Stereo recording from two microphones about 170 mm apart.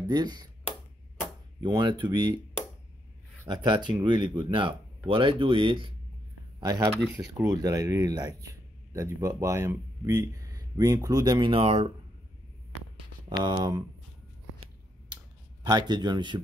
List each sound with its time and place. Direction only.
0.1 s speech: 25° right (ahead or behind)
1.6 s speech: 25° right (ahead or behind)
3.6 s speech: 25° right (ahead or behind)
13.3 s speech: 25° right (ahead or behind)
15.6 s speech: 25° right (ahead or behind)